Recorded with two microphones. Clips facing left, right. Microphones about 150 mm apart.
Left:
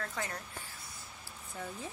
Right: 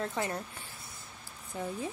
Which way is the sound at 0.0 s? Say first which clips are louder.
Right 6 dB; 25° right (ahead or behind).